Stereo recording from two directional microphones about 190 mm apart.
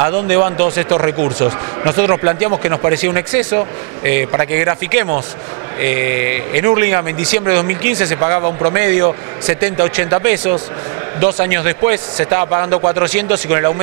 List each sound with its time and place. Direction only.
0.0 s speech: 20° right (ahead or behind)